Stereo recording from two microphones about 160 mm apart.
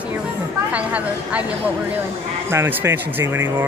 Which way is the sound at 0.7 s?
10° right (ahead or behind).